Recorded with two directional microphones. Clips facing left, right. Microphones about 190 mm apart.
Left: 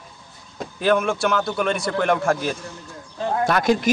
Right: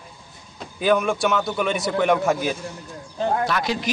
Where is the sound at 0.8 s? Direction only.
Centre (ahead or behind).